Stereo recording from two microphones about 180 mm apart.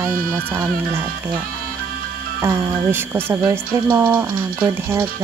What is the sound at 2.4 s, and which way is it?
Speech, 10° right (ahead or behind).